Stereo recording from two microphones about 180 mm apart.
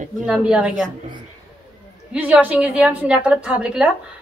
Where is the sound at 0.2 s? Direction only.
5° right (ahead or behind).